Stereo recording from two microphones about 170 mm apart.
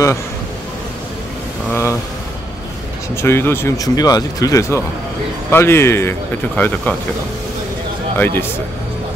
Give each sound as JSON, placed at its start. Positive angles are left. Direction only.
{"t": 1.7, "sound": "speech", "side_deg": 15}
{"t": 3.2, "sound": "speech", "side_deg": 15}